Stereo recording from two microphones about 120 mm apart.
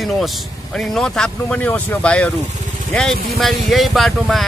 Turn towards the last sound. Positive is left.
turn(degrees=0)  # may be behind; listen again after turning